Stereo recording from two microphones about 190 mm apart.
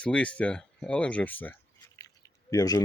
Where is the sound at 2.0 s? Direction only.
15° left (ahead or behind).